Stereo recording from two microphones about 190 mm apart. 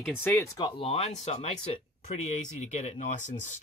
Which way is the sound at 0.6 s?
25° left (ahead or behind).